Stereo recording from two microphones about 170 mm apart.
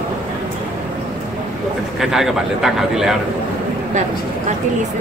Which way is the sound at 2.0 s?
Centre (ahead or behind).